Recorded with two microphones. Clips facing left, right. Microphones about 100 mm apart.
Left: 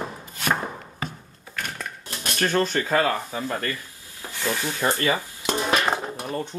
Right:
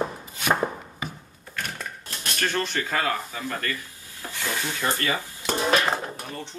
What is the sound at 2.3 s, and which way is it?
Speech, 40° left (ahead or behind).